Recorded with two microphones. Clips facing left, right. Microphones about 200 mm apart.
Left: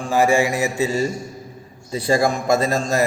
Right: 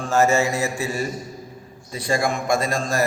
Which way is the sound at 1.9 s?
30° left (ahead or behind).